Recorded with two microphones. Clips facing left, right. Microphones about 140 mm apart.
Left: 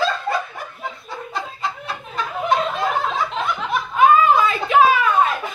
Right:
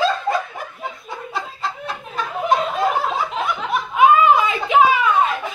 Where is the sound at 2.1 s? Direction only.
10° right (ahead or behind).